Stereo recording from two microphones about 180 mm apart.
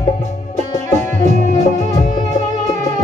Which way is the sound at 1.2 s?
40° left (ahead or behind).